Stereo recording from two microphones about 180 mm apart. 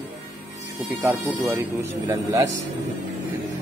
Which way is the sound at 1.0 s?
10° right (ahead or behind).